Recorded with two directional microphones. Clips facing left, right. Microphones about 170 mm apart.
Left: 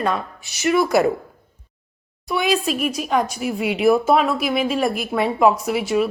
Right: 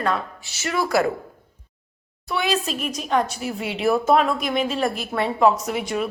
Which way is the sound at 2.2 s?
15° left (ahead or behind).